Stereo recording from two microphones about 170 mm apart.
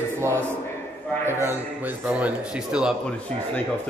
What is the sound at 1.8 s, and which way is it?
A man's voice, 10° right (ahead or behind).